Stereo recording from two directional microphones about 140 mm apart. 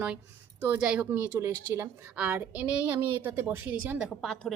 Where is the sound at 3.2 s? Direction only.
15° right (ahead or behind).